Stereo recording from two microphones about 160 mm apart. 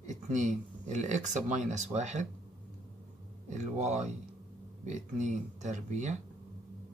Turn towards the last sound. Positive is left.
turn(degrees=-50)  # may be behind; listen again after turning